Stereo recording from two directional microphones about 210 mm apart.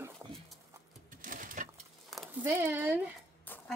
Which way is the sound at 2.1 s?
Centre (ahead or behind).